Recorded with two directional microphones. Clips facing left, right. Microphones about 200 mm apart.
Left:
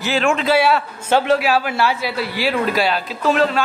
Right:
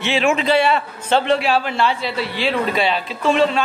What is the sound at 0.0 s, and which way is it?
A man's voice, centre (ahead or behind).